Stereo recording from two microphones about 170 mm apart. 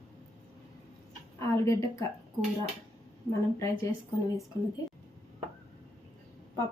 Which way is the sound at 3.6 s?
15° left (ahead or behind).